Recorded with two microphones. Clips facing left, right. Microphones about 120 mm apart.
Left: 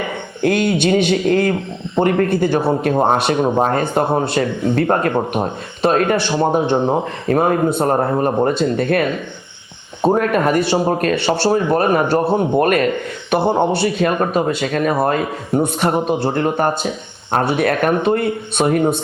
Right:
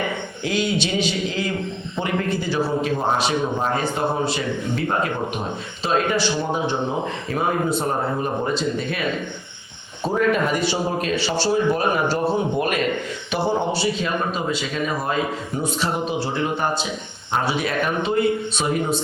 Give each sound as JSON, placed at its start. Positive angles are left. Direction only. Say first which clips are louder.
{"t": 0.4, "sound": "a man's voice", "louder": "left 8 dB", "side_deg": 55}